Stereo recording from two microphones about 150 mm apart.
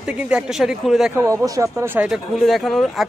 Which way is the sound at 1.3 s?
20° right (ahead or behind).